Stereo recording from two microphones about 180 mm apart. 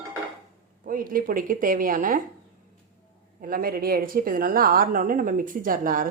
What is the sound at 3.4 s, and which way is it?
A woman's voice, 55° right (ahead or behind).